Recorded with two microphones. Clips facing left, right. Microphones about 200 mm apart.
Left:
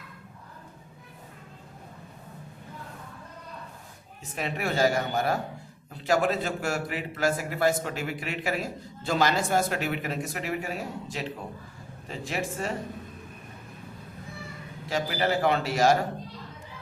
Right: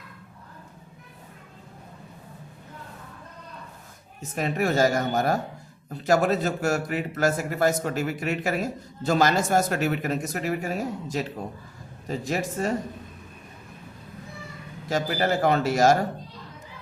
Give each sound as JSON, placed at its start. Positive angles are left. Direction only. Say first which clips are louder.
{"t": 4.2, "sound": "a man's voice", "louder": "right 5 dB", "side_deg": -45}
{"t": 14.8, "sound": "a man's voice", "louder": "right 3 dB", "side_deg": -45}